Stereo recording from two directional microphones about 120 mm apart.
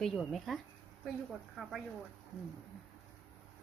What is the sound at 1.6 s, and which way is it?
Speech, centre (ahead or behind).